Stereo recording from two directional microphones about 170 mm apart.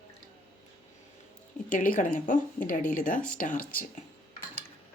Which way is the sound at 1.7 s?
50° left (ahead or behind).